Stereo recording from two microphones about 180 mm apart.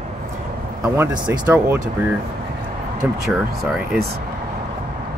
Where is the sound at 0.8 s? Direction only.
15° right (ahead or behind).